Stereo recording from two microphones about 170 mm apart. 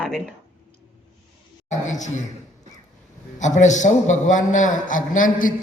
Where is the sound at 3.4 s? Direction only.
45° left (ahead or behind).